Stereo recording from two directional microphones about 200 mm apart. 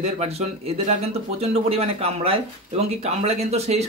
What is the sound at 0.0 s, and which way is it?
A man's voice, 30° right (ahead or behind).